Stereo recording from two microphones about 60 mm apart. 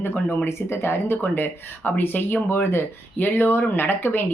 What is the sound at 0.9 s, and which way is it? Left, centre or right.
Speech, left.